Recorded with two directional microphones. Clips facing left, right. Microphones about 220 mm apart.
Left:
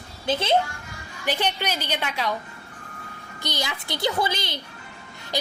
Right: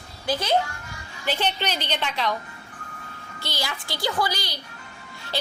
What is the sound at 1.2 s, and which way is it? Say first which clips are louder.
A woman's voice: even; 15° left (ahead or behind).